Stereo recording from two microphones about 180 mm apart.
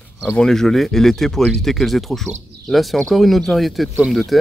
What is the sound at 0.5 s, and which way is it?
Speech, centre (ahead or behind).